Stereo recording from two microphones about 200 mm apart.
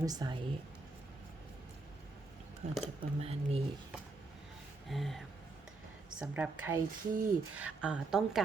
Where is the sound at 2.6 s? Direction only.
35° right (ahead or behind).